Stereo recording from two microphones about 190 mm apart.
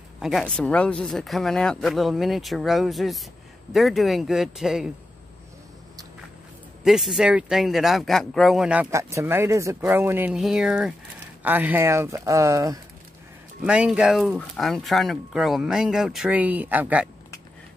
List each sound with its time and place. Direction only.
0.2 s speech: centre (ahead or behind)
6.8 s speech: centre (ahead or behind)
13.7 s speech: 5° right (ahead or behind)